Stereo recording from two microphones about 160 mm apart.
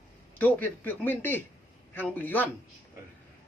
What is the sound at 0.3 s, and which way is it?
A man's voice, 10° left (ahead or behind).